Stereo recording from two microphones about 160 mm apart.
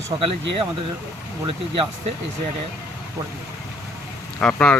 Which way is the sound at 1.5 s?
35° right (ahead or behind).